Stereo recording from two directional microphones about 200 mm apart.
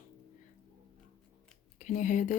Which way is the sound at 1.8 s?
40° left (ahead or behind).